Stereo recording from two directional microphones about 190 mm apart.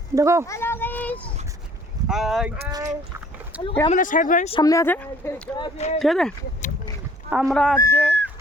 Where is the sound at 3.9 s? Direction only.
45° left (ahead or behind).